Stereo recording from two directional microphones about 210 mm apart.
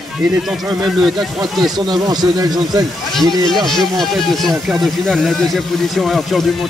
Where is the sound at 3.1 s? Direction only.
Centre (ahead or behind).